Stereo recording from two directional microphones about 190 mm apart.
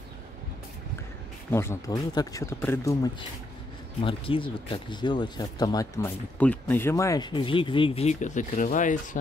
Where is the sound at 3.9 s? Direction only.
30° left (ahead or behind).